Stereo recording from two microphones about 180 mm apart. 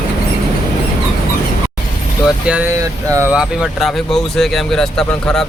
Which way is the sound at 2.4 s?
5° right (ahead or behind).